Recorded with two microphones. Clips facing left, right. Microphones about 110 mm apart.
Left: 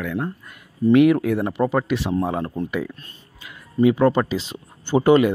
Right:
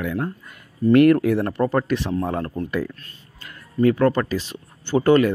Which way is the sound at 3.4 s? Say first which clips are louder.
Left 1 dB; 10° left (ahead or behind).